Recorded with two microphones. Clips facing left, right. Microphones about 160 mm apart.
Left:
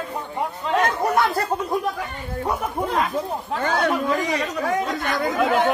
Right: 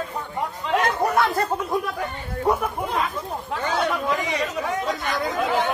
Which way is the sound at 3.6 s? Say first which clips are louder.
Left 2 dB; 50° left (ahead or behind).